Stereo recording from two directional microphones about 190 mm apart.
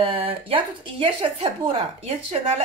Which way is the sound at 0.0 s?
30° right (ahead or behind).